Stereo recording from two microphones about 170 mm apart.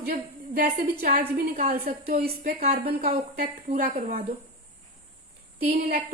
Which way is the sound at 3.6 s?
50° right (ahead or behind).